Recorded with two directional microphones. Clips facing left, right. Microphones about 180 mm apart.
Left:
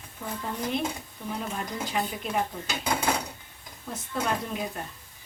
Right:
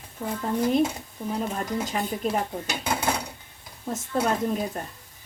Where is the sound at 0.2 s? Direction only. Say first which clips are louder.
Right 5 dB; 30° right (ahead or behind).